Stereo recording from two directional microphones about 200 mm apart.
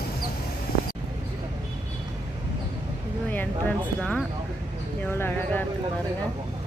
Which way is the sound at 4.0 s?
5° left (ahead or behind).